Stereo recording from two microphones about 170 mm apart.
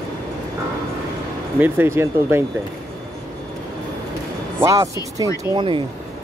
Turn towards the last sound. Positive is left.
turn(degrees=-30)  # may be behind; listen again after turning